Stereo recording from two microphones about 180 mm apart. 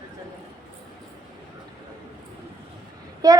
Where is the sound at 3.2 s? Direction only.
20° right (ahead or behind).